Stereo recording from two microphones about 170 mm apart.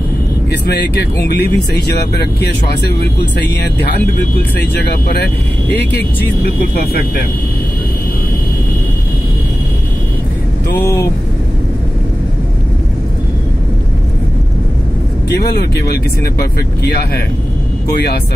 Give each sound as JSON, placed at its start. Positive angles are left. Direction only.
{"t": 0.5, "sound": "speech", "side_deg": 75}
{"t": 5.2, "sound": "speech", "side_deg": 80}
{"t": 6.4, "sound": "speech", "side_deg": 65}
{"t": 15.2, "sound": "speech", "side_deg": 75}